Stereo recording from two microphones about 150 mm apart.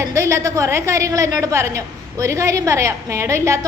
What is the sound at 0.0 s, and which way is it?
A woman's voice, 20° right (ahead or behind).